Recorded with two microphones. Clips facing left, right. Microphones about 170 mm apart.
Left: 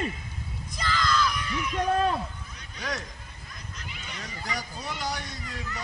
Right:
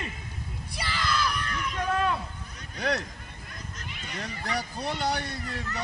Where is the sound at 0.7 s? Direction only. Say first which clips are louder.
Left 3 dB; 10° right (ahead or behind).